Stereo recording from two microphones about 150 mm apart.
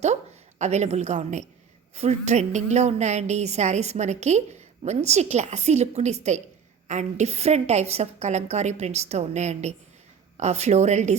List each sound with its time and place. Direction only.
0.6 s a woman's voice: 50° right (ahead or behind)